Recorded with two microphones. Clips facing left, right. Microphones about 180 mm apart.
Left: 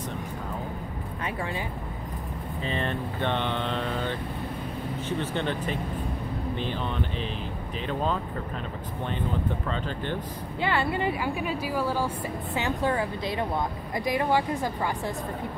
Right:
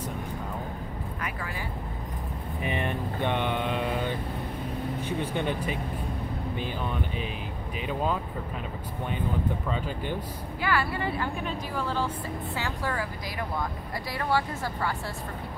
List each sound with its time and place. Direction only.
2.6 s speech: 15° right (ahead or behind)
9.7 s speech: 10° right (ahead or behind)
10.6 s a woman's voice: 25° left (ahead or behind)
12.5 s speech: 20° left (ahead or behind)